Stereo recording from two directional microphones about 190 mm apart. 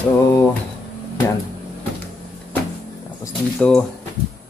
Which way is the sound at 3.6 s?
5° left (ahead or behind).